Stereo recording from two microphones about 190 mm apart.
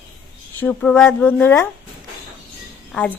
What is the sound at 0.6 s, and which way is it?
A woman's voice, 10° left (ahead or behind).